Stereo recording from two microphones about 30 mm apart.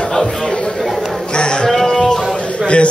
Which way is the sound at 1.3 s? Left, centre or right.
Left.